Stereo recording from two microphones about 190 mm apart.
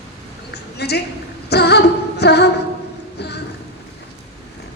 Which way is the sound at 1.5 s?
60° left (ahead or behind).